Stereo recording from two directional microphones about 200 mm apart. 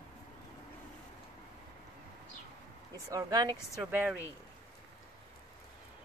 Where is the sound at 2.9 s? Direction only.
15° right (ahead or behind).